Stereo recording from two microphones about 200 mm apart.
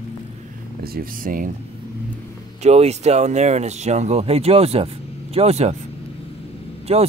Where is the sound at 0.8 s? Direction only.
45° right (ahead or behind).